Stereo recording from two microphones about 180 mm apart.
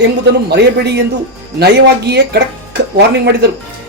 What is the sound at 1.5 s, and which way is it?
Speech, 65° right (ahead or behind).